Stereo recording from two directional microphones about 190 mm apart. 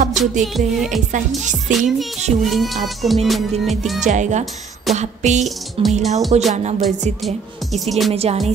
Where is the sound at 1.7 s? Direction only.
40° right (ahead or behind).